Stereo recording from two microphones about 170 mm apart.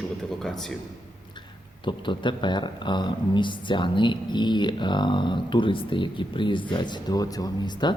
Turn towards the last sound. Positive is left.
turn(degrees=25)  # may be behind; listen again after turning